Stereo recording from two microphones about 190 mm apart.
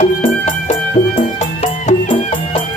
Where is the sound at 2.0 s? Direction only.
25° left (ahead or behind).